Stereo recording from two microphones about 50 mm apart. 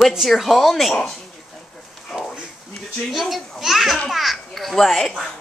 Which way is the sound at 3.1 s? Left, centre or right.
Centre.